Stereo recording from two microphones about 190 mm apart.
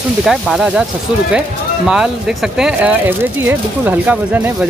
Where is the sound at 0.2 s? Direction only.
Centre (ahead or behind).